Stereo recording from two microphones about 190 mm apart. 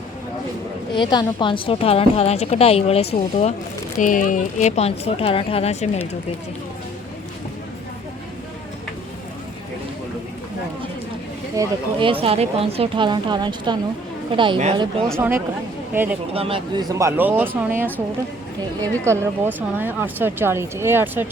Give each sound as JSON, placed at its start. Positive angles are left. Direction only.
{"t": 0.9, "sound": "a woman's voice", "side_deg": 25}
{"t": 11.5, "sound": "speech", "side_deg": -25}
{"t": 16.3, "sound": "speech", "side_deg": -30}
{"t": 19.0, "sound": "speech", "side_deg": -15}